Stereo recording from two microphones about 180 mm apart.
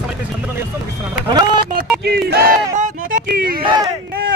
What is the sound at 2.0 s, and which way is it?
Speech, 60° right (ahead or behind).